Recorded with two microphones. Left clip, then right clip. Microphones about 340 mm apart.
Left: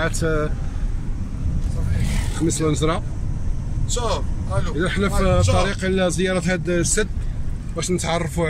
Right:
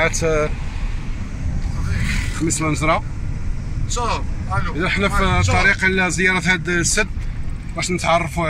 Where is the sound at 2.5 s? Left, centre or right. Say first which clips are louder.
Left 1 dB; centre.